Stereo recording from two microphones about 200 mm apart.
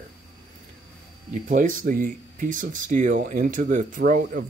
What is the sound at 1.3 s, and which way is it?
Speech, 40° right (ahead or behind).